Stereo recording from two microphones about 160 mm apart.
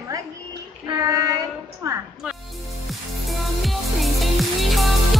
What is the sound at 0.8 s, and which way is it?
Child singing, 20° right (ahead or behind).